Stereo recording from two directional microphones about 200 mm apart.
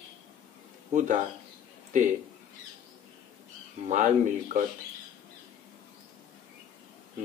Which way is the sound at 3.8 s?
40° right (ahead or behind).